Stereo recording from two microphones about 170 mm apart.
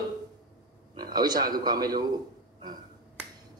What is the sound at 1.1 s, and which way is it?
Speech, 25° right (ahead or behind).